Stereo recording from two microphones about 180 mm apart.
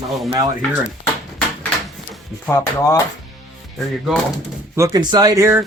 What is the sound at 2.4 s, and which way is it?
Speech, 10° left (ahead or behind).